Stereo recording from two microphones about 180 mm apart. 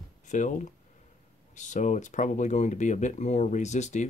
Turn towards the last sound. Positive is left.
turn(degrees=40)  # may be behind; listen again after turning